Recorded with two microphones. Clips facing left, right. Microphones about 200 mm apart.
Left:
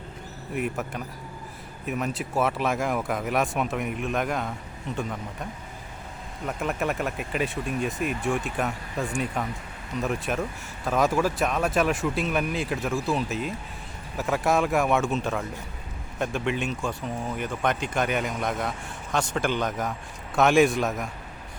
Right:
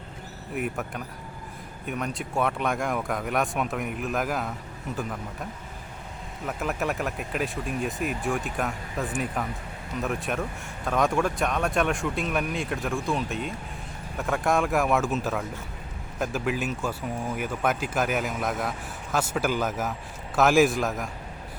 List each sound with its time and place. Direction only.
0.5 s speech: centre (ahead or behind)